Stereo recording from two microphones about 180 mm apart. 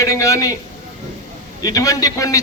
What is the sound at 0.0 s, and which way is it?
Speech, 20° left (ahead or behind).